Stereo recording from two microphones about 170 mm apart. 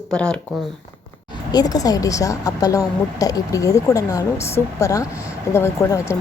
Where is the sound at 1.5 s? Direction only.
20° left (ahead or behind).